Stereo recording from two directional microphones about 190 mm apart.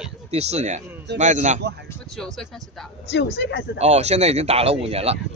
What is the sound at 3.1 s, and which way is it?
Speech, 65° left (ahead or behind).